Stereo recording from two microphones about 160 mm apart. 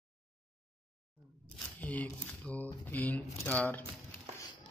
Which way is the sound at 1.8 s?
10° left (ahead or behind).